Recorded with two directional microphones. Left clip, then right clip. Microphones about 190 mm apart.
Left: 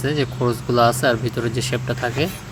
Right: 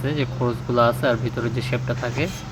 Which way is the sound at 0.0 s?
20° left (ahead or behind).